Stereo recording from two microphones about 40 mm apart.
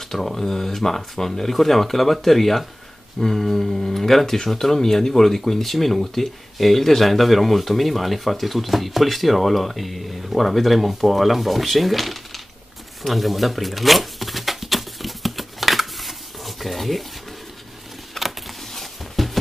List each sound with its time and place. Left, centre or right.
0.1 s speech: centre
13.0 s shuffling cards: centre
18.2 s a sound: centre